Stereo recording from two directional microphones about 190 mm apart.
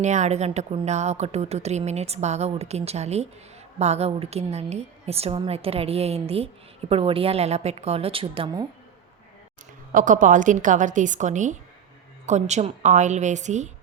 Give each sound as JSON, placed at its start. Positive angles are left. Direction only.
{"t": 0.0, "sound": "a woman's voice", "side_deg": -40}
{"t": 9.9, "sound": "a woman's voice", "side_deg": -45}